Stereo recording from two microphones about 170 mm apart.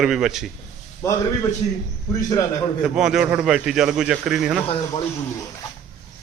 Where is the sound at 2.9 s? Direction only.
5° right (ahead or behind).